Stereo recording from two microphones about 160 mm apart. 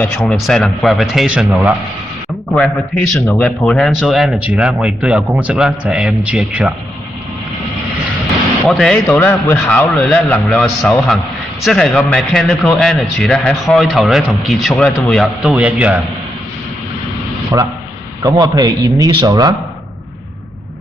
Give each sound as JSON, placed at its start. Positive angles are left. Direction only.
{"t": 0.0, "sound": "speech", "side_deg": 5}
{"t": 3.4, "sound": "speech", "side_deg": 0}
{"t": 8.6, "sound": "speech", "side_deg": 0}
{"t": 15.4, "sound": "a man's voice", "side_deg": -10}
{"t": 17.5, "sound": "a man's voice", "side_deg": -20}